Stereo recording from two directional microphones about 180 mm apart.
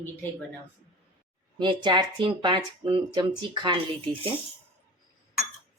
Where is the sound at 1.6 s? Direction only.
25° right (ahead or behind).